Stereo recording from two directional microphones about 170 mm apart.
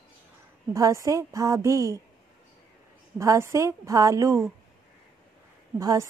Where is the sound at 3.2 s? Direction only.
15° right (ahead or behind).